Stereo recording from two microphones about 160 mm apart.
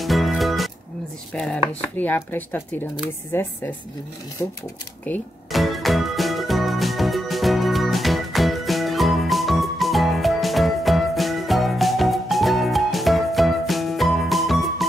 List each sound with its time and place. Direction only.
0.0 s music: centre (ahead or behind)
1.3 s chopping: 5° left (ahead or behind)
2.0 s speech: 10° left (ahead or behind)
5.5 s music: centre (ahead or behind)